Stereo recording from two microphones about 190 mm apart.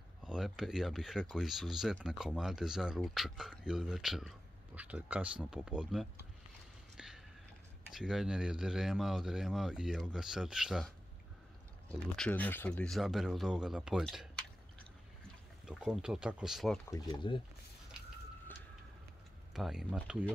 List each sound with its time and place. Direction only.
0.2 s speech: 5° right (ahead or behind)
7.0 s a sound: 5° right (ahead or behind)
7.9 s speech: 5° right (ahead or behind)
11.9 s speech: 5° left (ahead or behind)
15.6 s speech: centre (ahead or behind)
16.9 s speech: 20° left (ahead or behind)
19.5 s speech: centre (ahead or behind)